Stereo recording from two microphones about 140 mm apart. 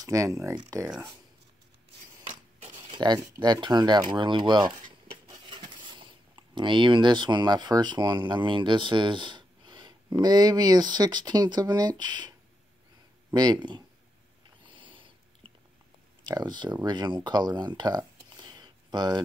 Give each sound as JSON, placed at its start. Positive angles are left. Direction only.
{"t": 0.0, "sound": "speech", "side_deg": -25}
{"t": 2.2, "sound": "speech", "side_deg": -35}
{"t": 14.7, "sound": "a sound", "side_deg": -35}
{"t": 16.3, "sound": "speech", "side_deg": -30}